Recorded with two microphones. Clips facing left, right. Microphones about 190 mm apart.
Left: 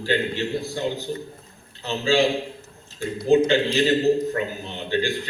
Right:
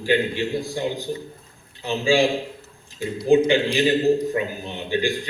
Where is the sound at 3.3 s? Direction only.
15° right (ahead or behind).